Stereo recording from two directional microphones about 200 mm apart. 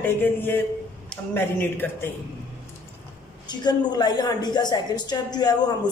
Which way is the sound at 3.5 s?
20° left (ahead or behind).